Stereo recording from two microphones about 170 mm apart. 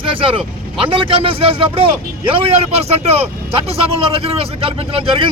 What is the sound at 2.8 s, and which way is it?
Speech, 40° right (ahead or behind).